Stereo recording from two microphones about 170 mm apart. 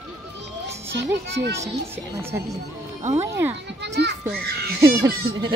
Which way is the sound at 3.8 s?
90° right.